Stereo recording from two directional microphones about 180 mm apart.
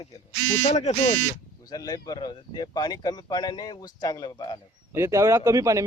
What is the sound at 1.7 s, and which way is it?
Speech, 20° left (ahead or behind).